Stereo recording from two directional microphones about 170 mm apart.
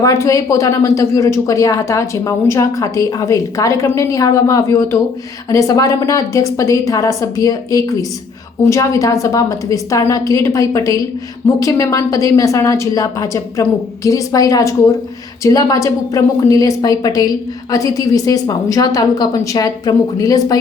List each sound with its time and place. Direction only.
0.0 s a woman's voice: 20° left (ahead or behind)